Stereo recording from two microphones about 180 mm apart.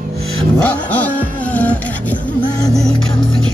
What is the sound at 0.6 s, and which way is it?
Music, 10° left (ahead or behind).